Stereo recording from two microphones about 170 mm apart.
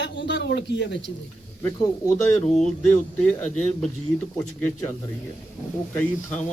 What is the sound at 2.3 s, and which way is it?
Speech, centre (ahead or behind).